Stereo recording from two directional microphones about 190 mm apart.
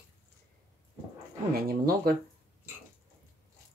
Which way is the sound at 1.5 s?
50° right (ahead or behind).